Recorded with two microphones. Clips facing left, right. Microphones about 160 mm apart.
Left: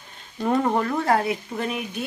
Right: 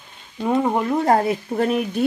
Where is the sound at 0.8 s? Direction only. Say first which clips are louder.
Right 4 dB; 30° right (ahead or behind).